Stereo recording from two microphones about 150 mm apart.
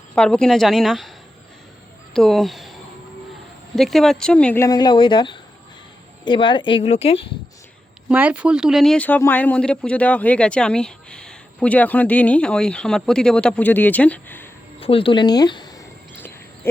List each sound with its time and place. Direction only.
0.2 s a woman's voice: 5° left (ahead or behind)
2.1 s speech: centre (ahead or behind)
3.8 s a woman's voice: centre (ahead or behind)
4.6 s speech: 25° left (ahead or behind)
8.1 s speech: 10° right (ahead or behind); by 14.5 s 15° left (ahead or behind)
14.8 s speech: 40° left (ahead or behind)